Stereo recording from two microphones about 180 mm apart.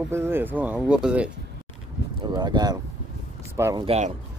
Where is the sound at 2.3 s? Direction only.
20° right (ahead or behind).